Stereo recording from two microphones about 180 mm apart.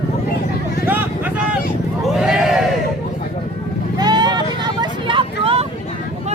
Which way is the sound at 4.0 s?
25° right (ahead or behind).